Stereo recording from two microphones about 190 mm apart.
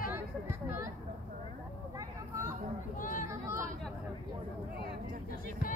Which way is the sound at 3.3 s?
15° right (ahead or behind).